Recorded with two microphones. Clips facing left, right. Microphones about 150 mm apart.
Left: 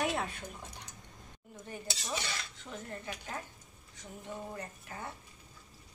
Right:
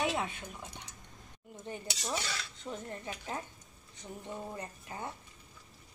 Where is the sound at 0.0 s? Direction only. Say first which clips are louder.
Even; centre (ahead or behind).